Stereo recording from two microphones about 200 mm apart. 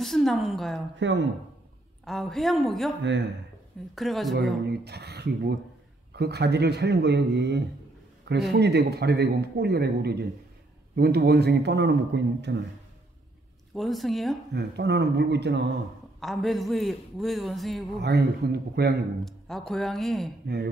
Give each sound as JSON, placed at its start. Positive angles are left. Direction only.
{"t": 0.0, "sound": "a man's voice", "side_deg": 0}
{"t": 0.9, "sound": "a man's voice", "side_deg": -65}
{"t": 2.0, "sound": "a man's voice", "side_deg": 0}
{"t": 3.0, "sound": "a man's voice", "side_deg": -60}
{"t": 3.9, "sound": "a man's voice", "side_deg": 0}
{"t": 4.6, "sound": "a man's voice", "side_deg": -55}
{"t": 13.7, "sound": "a man's voice", "side_deg": 0}
{"t": 14.5, "sound": "a man's voice", "side_deg": -60}
{"t": 16.2, "sound": "a man's voice", "side_deg": 0}
{"t": 18.0, "sound": "a man's voice", "side_deg": -55}
{"t": 19.2, "sound": "a man's voice", "side_deg": 0}
{"t": 20.4, "sound": "speech", "side_deg": -50}